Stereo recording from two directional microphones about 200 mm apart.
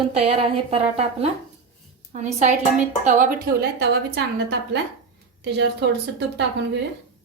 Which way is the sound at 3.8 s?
55° right (ahead or behind).